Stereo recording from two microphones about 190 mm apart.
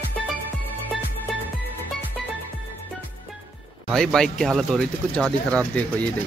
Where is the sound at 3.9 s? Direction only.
5° left (ahead or behind).